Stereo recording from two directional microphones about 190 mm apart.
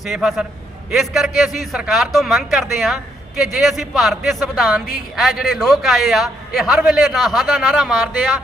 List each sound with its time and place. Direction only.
0.0 s speech: centre (ahead or behind)